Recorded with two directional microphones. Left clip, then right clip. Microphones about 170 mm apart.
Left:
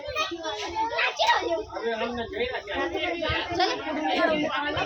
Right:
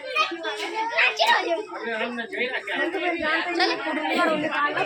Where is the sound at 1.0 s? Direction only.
40° left (ahead or behind).